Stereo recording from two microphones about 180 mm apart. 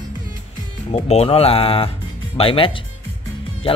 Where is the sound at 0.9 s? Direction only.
35° left (ahead or behind).